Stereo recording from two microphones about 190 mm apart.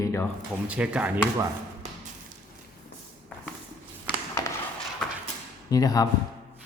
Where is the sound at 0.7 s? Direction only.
5° right (ahead or behind).